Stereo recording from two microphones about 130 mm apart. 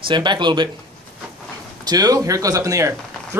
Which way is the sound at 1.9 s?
30° right (ahead or behind).